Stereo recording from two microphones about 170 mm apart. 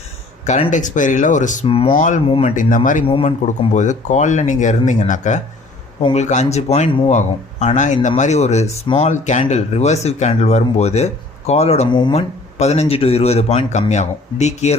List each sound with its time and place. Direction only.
0.4 s speech: 45° left (ahead or behind)
1.6 s speech: 35° left (ahead or behind)
2.0 s speech: 45° left (ahead or behind)
3.1 s speech: 35° left (ahead or behind)
12.5 s speech: 40° left (ahead or behind)